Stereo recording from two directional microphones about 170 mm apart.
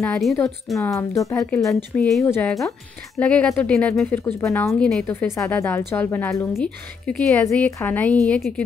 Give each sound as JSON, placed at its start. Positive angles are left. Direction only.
{"t": 0.0, "sound": "a woman's voice", "side_deg": 5}
{"t": 0.7, "sound": "speech", "side_deg": 15}
{"t": 2.0, "sound": "a woman's voice", "side_deg": 0}
{"t": 2.2, "sound": "speech", "side_deg": 15}
{"t": 4.7, "sound": "a woman's voice", "side_deg": 5}
{"t": 5.0, "sound": "a woman's voice", "side_deg": 15}